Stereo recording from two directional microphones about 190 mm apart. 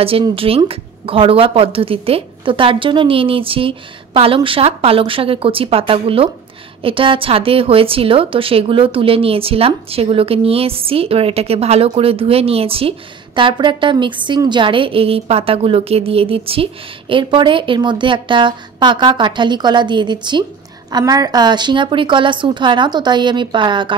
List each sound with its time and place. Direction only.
0.0 s a woman's voice: 30° right (ahead or behind)